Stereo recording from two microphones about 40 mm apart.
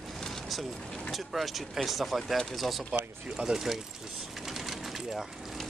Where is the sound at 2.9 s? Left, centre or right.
Right.